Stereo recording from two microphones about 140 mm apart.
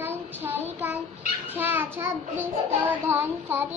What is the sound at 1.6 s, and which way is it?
A child's voice, 15° right (ahead or behind).